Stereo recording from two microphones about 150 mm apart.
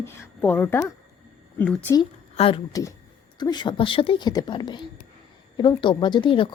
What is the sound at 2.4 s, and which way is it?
A woman's voice, 40° left (ahead or behind).